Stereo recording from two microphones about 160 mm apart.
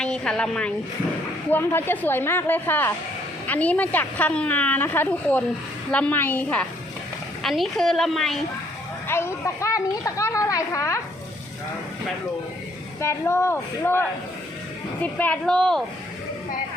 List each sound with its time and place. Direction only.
0.0 s a woman's voice: 5° left (ahead or behind)
9.0 s a woman's voice: 15° left (ahead or behind)
13.0 s a woman's voice: 15° left (ahead or behind)